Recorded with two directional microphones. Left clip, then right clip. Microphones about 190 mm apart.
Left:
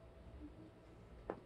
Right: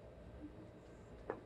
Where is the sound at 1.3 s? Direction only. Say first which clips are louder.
Right 1 dB; 60° left (ahead or behind).